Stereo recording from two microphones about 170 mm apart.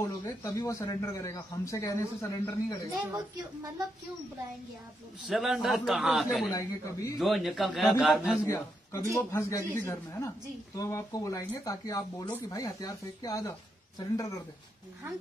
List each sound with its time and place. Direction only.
0.0 s a man's voice: 15° left (ahead or behind)
5.3 s a man's voice: centre (ahead or behind)
6.5 s a man's voice: 20° left (ahead or behind)
7.2 s a man's voice: centre (ahead or behind)
8.5 s a man's voice: 15° left (ahead or behind)